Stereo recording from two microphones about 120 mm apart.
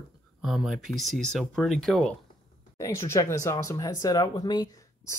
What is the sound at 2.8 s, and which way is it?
Speech, 20° left (ahead or behind).